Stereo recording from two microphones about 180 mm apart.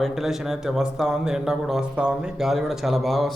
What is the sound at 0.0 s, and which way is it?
Speech, centre (ahead or behind).